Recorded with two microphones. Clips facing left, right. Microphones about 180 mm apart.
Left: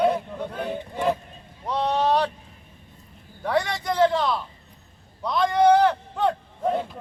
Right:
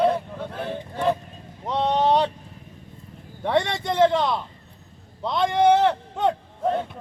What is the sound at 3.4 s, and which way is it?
A man's voice, 25° right (ahead or behind).